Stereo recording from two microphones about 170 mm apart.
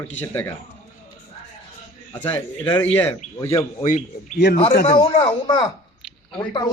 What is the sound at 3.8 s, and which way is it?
Speech, 45° left (ahead or behind).